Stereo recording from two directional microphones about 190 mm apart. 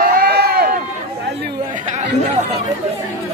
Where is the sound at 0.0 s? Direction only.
50° right (ahead or behind).